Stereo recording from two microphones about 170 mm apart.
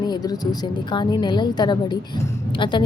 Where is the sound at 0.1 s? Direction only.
25° left (ahead or behind).